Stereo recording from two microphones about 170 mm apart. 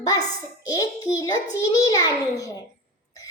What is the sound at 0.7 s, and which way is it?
A child's voice, 20° left (ahead or behind).